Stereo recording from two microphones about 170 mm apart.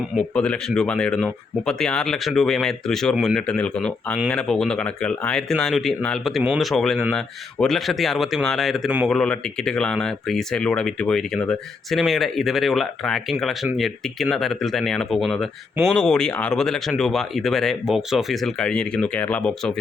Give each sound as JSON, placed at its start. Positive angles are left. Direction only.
{"t": 0.3, "sound": "speech", "side_deg": 5}